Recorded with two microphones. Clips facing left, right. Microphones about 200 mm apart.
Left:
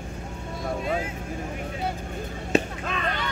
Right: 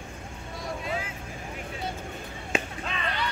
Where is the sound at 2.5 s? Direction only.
50° left (ahead or behind).